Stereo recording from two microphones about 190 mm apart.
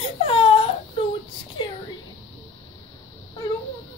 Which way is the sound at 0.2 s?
30° left (ahead or behind).